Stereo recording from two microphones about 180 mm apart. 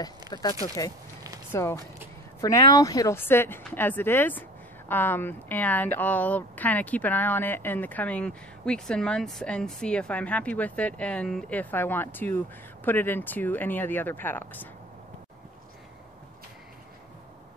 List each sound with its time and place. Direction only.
0.3 s speech: 20° left (ahead or behind)